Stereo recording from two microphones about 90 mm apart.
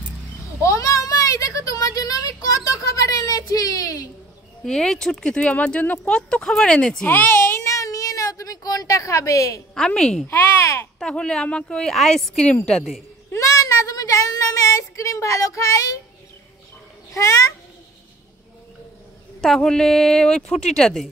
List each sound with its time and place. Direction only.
0.6 s a sound: 35° left (ahead or behind)
4.6 s speech: 5° left (ahead or behind)
7.1 s a sound: 25° left (ahead or behind)
9.8 s speech: 5° left (ahead or behind)
10.2 s babbling: 30° left (ahead or behind)
11.0 s a woman's voice: 10° left (ahead or behind)
13.3 s child singing: 35° left (ahead or behind)
17.1 s a child's voice: 40° left (ahead or behind)
19.4 s a woman's voice: 5° left (ahead or behind)